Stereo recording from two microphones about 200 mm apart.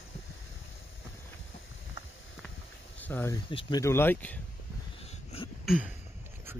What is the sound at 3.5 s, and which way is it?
Speech, 25° left (ahead or behind).